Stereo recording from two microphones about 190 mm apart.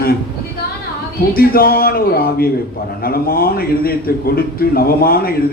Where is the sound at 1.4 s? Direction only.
50° left (ahead or behind).